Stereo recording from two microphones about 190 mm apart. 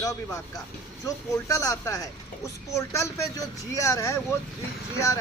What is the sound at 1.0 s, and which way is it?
Speech, 15° left (ahead or behind).